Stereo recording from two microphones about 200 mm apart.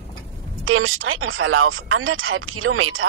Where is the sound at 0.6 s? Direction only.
90° right.